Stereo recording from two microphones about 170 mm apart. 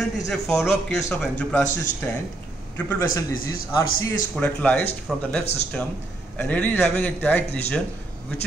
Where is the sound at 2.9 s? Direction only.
15° left (ahead or behind).